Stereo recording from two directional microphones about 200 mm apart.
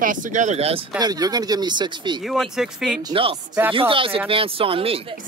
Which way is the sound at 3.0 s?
25° right (ahead or behind).